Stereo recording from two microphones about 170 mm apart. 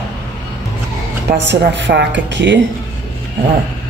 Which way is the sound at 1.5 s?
90° right.